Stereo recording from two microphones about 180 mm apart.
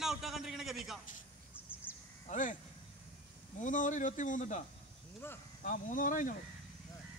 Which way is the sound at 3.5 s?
45° left (ahead or behind).